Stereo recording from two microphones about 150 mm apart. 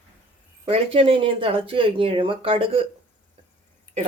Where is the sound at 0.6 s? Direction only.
40° right (ahead or behind).